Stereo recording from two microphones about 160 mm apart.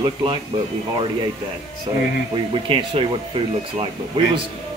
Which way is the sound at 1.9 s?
30° right (ahead or behind).